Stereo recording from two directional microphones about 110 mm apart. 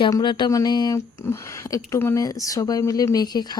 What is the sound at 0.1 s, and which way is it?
Speech, 45° left (ahead or behind).